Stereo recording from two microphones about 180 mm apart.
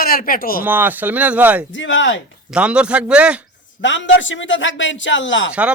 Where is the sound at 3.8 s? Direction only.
90° left.